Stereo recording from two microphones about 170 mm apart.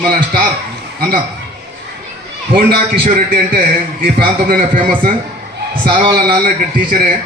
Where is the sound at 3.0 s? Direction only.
55° right (ahead or behind).